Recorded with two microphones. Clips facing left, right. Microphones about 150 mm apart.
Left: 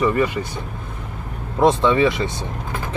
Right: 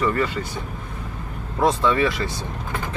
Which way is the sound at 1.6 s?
20° left (ahead or behind).